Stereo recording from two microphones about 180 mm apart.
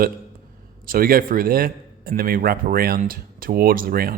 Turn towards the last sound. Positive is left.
turn(degrees=-55)  # may be behind; listen again after turning